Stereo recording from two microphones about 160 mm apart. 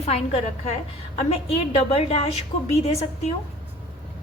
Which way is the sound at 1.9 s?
40° left (ahead or behind).